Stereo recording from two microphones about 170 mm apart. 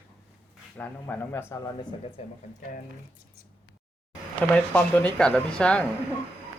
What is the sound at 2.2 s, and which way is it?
Speech, 35° left (ahead or behind).